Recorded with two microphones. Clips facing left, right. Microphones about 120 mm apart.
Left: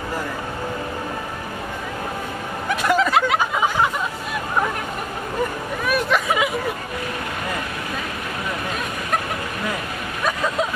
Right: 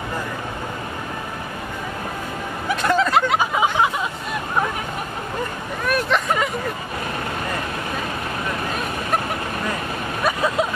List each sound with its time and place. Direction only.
2.8 s turkey: 5° left (ahead or behind)
5.9 s hubbub: 5° left (ahead or behind)